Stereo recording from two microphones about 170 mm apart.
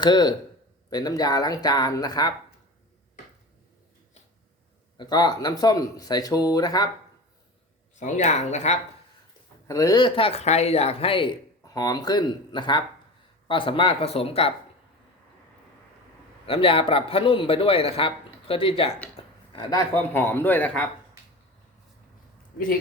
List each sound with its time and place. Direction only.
0.0 s speech: 25° left (ahead or behind)
4.9 s speech: 25° left (ahead or behind)
7.9 s speech: 45° left (ahead or behind)
9.6 s a man's voice: 20° left (ahead or behind); by 14.5 s 35° left (ahead or behind)
16.5 s a man's voice: 35° left (ahead or behind)
19.1 s a sound: 25° left (ahead or behind)
19.9 s a man's voice: 15° left (ahead or behind)